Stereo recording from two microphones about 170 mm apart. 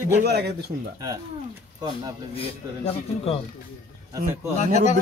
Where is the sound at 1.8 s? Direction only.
25° right (ahead or behind).